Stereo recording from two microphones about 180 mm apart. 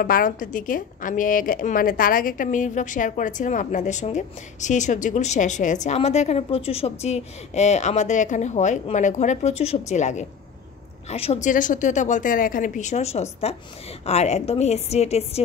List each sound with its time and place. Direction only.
0.0 s a woman's voice: 50° left (ahead or behind); by 15.4 s 35° left (ahead or behind)